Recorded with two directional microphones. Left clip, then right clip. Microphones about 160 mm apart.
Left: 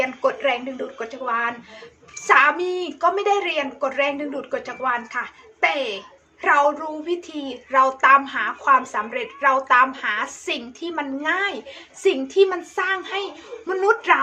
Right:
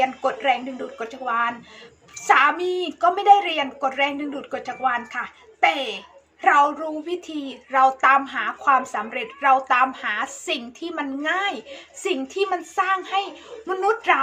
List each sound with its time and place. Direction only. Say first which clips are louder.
0.3 s a woman's voice: even; 5° left (ahead or behind)